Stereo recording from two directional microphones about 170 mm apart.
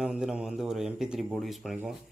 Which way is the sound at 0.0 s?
5° right (ahead or behind).